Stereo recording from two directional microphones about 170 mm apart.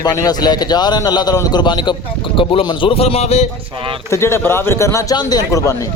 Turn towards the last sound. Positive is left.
turn(degrees=20)  # may be behind; listen again after turning